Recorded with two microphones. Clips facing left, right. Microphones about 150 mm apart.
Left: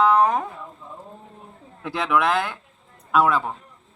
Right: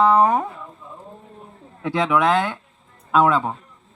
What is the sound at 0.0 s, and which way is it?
Speech, 20° right (ahead or behind).